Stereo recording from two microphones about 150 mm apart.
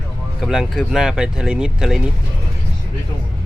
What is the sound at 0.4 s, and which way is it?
Speech, centre (ahead or behind).